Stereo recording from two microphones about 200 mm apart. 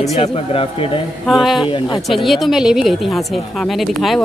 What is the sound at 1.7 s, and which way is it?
Speech, 20° left (ahead or behind).